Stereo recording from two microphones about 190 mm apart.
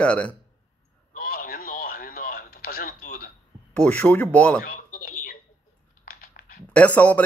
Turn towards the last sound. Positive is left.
turn(degrees=10)  # may be behind; listen again after turning